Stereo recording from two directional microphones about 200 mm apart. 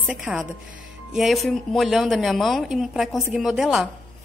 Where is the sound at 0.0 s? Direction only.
5° right (ahead or behind).